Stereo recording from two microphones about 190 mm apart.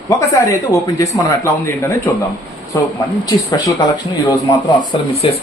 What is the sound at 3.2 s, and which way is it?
Speech, 20° left (ahead or behind).